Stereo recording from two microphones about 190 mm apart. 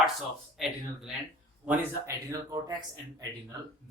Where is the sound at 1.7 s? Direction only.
15° right (ahead or behind).